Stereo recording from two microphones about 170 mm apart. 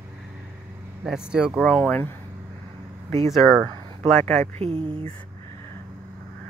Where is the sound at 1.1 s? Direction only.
5° right (ahead or behind).